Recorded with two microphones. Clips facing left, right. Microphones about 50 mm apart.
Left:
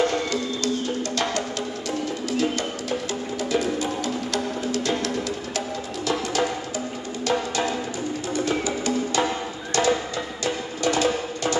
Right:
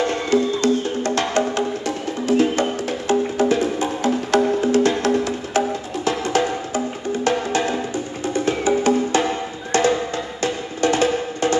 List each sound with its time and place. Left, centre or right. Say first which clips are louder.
0.0 s music: right 4 dB; right